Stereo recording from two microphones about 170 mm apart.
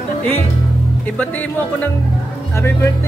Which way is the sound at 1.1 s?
10° left (ahead or behind).